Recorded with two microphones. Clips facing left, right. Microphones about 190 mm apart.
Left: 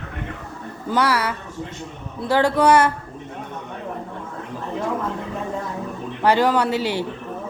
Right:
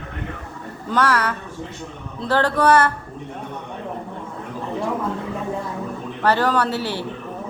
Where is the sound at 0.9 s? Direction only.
10° left (ahead or behind).